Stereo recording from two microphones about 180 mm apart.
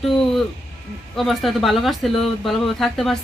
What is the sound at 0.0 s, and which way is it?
Speech, centre (ahead or behind).